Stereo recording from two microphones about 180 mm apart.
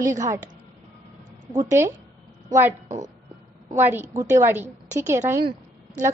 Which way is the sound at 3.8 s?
15° right (ahead or behind).